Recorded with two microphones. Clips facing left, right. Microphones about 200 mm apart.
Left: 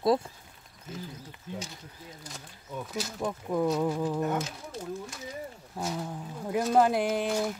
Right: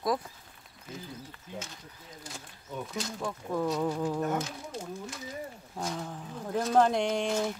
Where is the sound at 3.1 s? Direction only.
15° left (ahead or behind).